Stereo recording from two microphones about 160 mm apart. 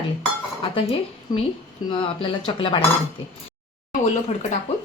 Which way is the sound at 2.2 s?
30° left (ahead or behind).